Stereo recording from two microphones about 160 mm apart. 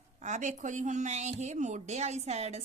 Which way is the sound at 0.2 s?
50° right (ahead or behind).